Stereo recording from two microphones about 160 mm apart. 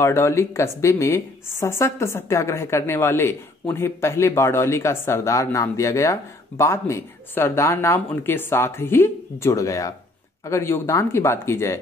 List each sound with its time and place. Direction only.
0.0 s speech: 15° left (ahead or behind)